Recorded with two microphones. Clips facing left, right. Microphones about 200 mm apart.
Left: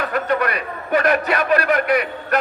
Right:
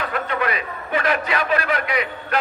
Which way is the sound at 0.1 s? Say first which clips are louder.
Left 4 dB; 40° left (ahead or behind).